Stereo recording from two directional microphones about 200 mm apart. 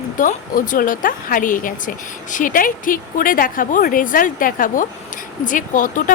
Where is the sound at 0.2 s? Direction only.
40° left (ahead or behind).